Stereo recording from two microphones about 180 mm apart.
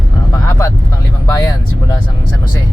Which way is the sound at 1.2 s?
20° left (ahead or behind).